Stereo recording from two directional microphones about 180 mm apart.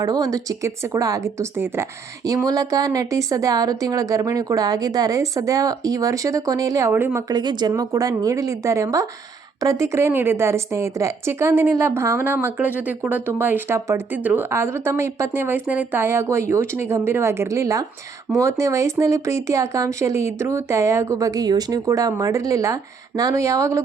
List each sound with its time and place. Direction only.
0.0 s speech: 20° right (ahead or behind)
7.3 s speech: 25° right (ahead or behind)